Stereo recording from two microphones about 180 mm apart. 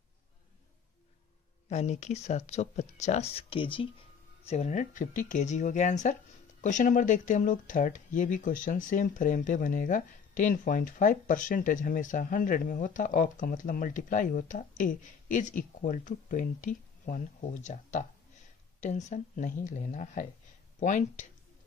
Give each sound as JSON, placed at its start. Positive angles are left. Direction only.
{"t": 1.7, "sound": "speech", "side_deg": 40}
{"t": 4.5, "sound": "speech", "side_deg": 40}